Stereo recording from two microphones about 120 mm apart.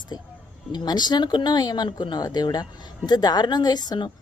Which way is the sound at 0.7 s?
35° left (ahead or behind).